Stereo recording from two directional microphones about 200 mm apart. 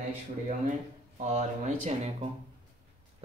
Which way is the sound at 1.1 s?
35° right (ahead or behind).